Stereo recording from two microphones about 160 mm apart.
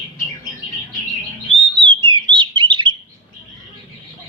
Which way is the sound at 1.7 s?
30° right (ahead or behind).